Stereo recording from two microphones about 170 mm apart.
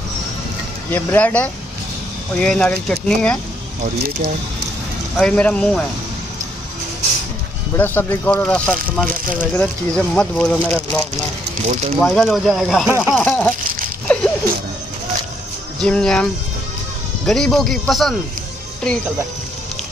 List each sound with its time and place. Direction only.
0.8 s speech: 10° left (ahead or behind)
5.1 s speech: 5° left (ahead or behind)
7.7 s speech: 15° left (ahead or behind)
11.6 s speech: 40° right (ahead or behind)
12.0 s speech: centre (ahead or behind)
13.2 s speech: 10° left (ahead or behind)
14.0 s a sound: 5° left (ahead or behind)
15.8 s speech: 5° left (ahead or behind)
17.3 s speech: 5° left (ahead or behind)